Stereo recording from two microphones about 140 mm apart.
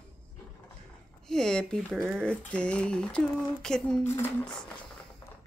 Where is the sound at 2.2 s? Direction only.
5° left (ahead or behind).